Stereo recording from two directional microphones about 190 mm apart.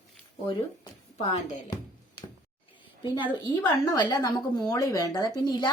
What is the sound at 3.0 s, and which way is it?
A woman's voice, 25° left (ahead or behind).